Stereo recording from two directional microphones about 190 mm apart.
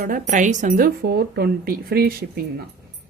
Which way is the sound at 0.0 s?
45° right (ahead or behind).